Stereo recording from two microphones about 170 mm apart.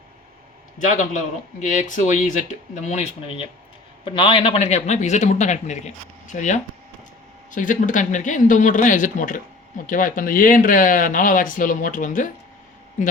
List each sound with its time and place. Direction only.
0.8 s speech: 50° left (ahead or behind)